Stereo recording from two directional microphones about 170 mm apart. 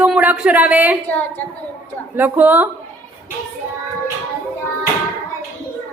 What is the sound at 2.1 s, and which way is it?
Speech, 10° right (ahead or behind).